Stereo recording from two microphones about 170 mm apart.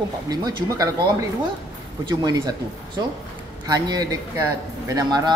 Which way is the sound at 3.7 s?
20° right (ahead or behind).